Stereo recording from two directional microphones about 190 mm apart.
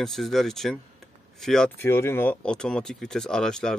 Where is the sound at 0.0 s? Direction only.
Centre (ahead or behind).